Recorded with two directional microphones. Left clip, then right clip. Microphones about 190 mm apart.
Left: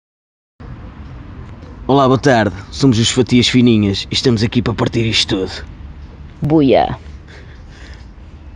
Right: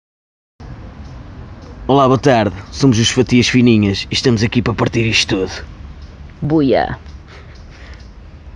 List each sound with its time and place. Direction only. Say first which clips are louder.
1.9 s speech: even; 10° left (ahead or behind)
6.4 s speech: left 2 dB; 20° left (ahead or behind)